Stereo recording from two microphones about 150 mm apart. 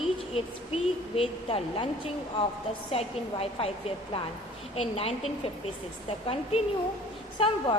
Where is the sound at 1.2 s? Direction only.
40° left (ahead or behind).